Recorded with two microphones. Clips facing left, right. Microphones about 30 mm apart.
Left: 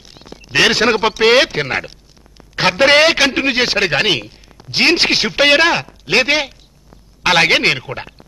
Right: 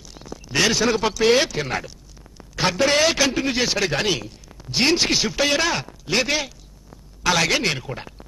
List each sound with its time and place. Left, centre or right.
0.0 s a man's voice: left